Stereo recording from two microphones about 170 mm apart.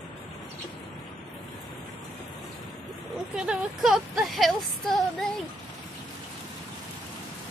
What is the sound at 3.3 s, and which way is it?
Speech, 5° right (ahead or behind).